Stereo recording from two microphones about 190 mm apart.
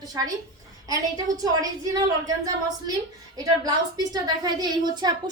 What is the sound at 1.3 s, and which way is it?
Speech, 20° right (ahead or behind).